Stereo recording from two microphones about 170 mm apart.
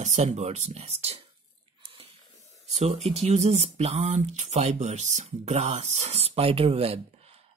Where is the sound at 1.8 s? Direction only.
35° right (ahead or behind).